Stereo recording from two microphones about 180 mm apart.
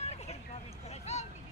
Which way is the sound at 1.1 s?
35° left (ahead or behind).